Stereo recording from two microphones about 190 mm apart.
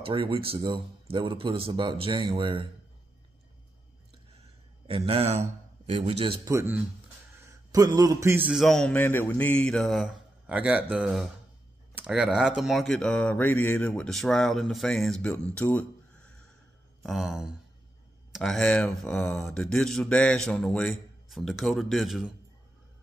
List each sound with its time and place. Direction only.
0.0 s speech: 30° right (ahead or behind)
4.8 s a man's voice: 30° right (ahead or behind)
6.4 s a man's voice: 15° right (ahead or behind)